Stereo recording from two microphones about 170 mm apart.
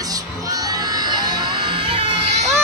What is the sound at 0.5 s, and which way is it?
Music, 25° right (ahead or behind).